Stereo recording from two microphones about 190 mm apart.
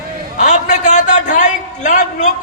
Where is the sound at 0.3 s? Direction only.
40° left (ahead or behind).